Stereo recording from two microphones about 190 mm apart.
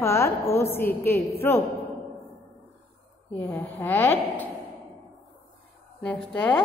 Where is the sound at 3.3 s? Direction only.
10° left (ahead or behind).